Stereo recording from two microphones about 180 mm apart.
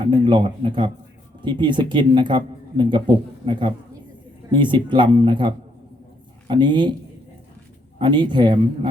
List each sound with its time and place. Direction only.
0.0 s speech: 25° right (ahead or behind)
7.9 s speech: 25° right (ahead or behind)